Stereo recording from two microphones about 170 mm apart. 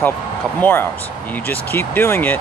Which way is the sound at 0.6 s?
10° left (ahead or behind).